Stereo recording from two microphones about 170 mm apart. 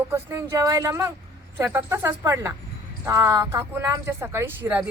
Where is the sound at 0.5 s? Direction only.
20° right (ahead or behind).